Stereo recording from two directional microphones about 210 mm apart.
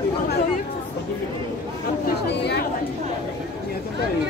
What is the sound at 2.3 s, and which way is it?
Chatter, 50° left (ahead or behind).